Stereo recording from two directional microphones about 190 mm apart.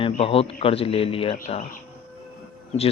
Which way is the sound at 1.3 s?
40° left (ahead or behind).